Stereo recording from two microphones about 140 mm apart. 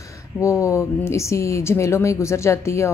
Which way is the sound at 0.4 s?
20° left (ahead or behind).